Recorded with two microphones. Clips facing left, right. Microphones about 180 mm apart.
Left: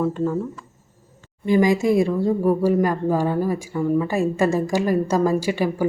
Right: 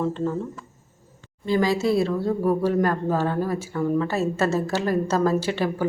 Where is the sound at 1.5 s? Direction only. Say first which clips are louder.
Left 4 dB; 15° left (ahead or behind).